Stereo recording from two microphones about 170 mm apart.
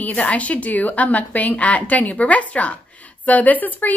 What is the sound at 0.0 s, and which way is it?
A woman's voice, 10° left (ahead or behind).